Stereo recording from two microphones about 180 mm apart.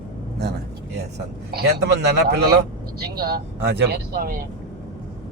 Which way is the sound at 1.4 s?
60° right (ahead or behind).